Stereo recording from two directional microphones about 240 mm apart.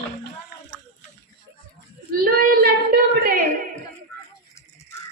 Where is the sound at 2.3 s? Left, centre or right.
Right.